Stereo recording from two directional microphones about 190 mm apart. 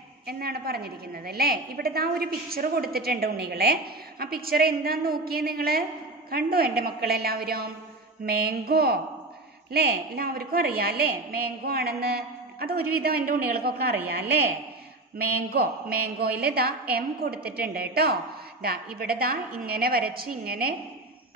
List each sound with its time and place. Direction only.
0.3 s a woman's voice: 55° right (ahead or behind)
15.1 s a woman's voice: 55° right (ahead or behind)